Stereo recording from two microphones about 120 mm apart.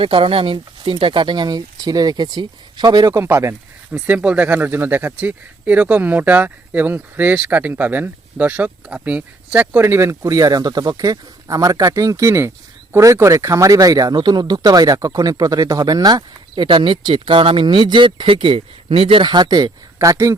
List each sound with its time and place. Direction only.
0.0 s speech: 50° right (ahead or behind); by 3.5 s 25° right (ahead or behind)
3.9 s speech: 10° right (ahead or behind); by 16.6 s 35° right (ahead or behind)
16.6 s speech: 45° right (ahead or behind); by 20.3 s 25° right (ahead or behind)